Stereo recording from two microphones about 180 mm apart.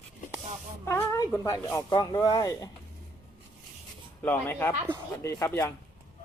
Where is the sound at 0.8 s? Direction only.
15° left (ahead or behind).